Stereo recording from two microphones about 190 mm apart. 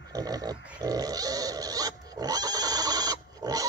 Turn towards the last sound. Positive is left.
turn(degrees=-20)  # may be behind; listen again after turning